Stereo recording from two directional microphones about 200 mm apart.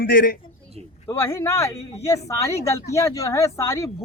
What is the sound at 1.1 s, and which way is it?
Speech, 15° left (ahead or behind).